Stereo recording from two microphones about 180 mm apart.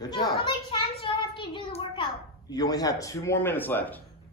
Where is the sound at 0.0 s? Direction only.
25° left (ahead or behind).